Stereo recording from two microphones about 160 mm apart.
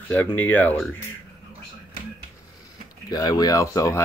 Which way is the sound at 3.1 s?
25° left (ahead or behind).